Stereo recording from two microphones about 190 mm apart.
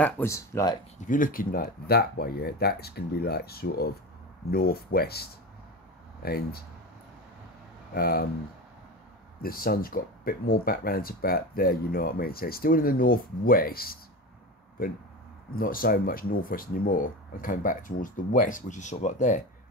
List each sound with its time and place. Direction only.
0.0 s speech: 15° left (ahead or behind)
1.0 s speech: 45° left (ahead or behind)
7.9 s speech: 50° left (ahead or behind)
9.4 s speech: 50° left (ahead or behind)